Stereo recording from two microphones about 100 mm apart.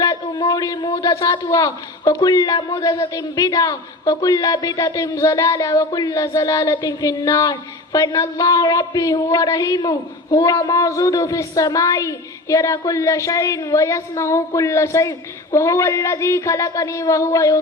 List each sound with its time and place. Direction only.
0.0 s speech: 45° left (ahead or behind)
10.3 s speech: 35° left (ahead or behind)